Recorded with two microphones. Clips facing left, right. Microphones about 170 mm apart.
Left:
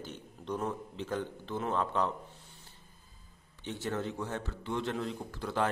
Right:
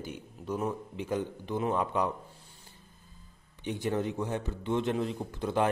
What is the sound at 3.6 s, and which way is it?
A man's voice, 15° right (ahead or behind).